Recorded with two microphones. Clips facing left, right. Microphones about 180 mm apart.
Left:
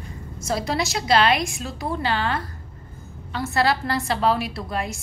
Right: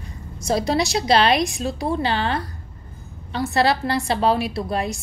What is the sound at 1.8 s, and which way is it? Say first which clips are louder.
A woman's voice: right 1 dB; 25° right (ahead or behind).